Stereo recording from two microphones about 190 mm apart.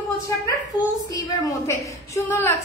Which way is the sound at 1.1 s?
15° left (ahead or behind).